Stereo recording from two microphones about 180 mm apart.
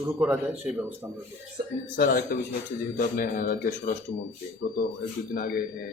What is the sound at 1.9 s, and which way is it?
Speech, 50° left (ahead or behind).